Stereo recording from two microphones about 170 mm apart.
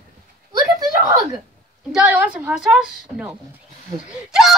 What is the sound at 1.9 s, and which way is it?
A child's voice, 10° right (ahead or behind).